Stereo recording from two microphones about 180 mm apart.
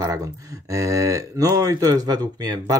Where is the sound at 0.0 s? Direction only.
20° right (ahead or behind).